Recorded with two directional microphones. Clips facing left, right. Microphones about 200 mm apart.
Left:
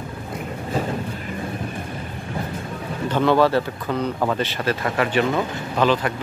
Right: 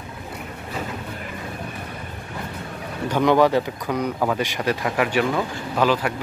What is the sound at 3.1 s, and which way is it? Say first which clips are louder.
Speech: even; 15° right (ahead or behind).